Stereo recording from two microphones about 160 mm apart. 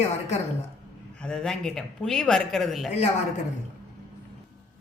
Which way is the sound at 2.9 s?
40° left (ahead or behind).